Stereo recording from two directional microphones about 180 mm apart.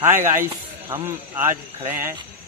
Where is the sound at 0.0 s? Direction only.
15° right (ahead or behind).